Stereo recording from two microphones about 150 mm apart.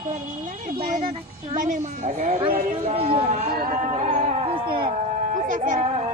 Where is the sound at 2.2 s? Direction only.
45° right (ahead or behind).